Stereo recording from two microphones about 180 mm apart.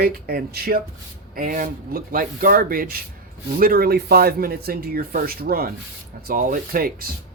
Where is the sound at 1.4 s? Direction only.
45° right (ahead or behind).